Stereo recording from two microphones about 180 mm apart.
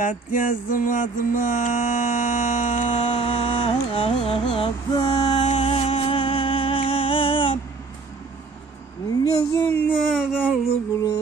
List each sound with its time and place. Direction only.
0.0 s mantra: 50° left (ahead or behind)
3.2 s music: 30° left (ahead or behind)
9.2 s speech: 20° left (ahead or behind)
10.1 s a sound: centre (ahead or behind)